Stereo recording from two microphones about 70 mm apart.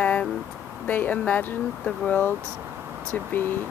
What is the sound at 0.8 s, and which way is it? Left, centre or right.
Speech, left.